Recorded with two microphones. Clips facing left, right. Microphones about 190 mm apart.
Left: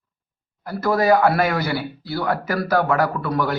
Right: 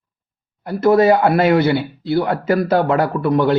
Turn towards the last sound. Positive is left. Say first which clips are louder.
# right 7 dB
turn(degrees=-25)  # may be behind; listen again after turning